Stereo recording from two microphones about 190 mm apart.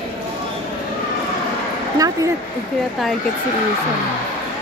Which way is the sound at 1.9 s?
20° right (ahead or behind).